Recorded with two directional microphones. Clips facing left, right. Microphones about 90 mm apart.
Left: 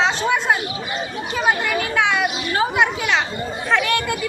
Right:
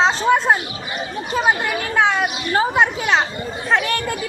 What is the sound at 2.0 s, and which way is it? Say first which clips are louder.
Speech: right 1 dB; 35° right (ahead or behind).